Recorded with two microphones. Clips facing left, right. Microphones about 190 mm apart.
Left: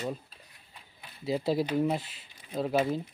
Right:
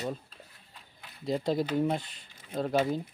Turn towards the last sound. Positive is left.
turn(degrees=5)  # may be behind; listen again after turning